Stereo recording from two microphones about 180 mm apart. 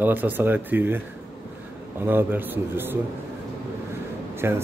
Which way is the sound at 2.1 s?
10° right (ahead or behind).